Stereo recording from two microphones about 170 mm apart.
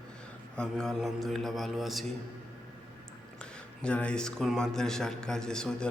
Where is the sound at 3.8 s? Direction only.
5° left (ahead or behind).